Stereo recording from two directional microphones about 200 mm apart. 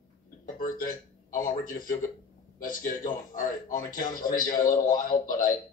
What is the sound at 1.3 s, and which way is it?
Speech, 15° left (ahead or behind).